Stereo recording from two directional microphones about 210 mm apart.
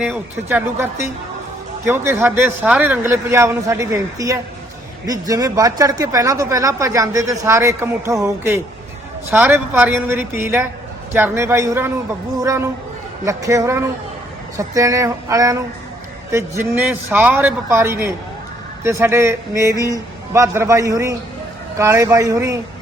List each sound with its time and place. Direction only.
0.0 s speech: 5° right (ahead or behind)